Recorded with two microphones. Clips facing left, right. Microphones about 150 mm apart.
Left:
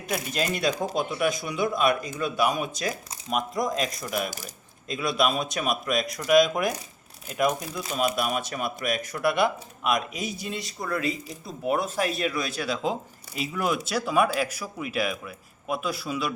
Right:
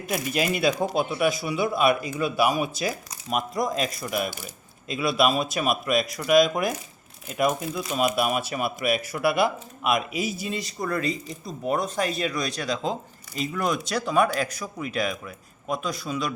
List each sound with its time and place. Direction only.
0.1 s speech: 5° right (ahead or behind)
4.3 s speech: 40° left (ahead or behind)
4.9 s speech: 5° right (ahead or behind)